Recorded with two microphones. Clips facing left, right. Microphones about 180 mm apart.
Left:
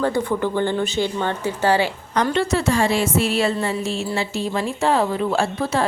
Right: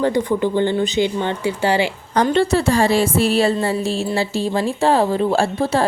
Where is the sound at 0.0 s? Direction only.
15° right (ahead or behind).